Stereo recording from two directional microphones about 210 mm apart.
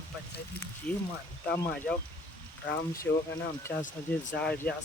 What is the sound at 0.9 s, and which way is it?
Speech, 5° left (ahead or behind).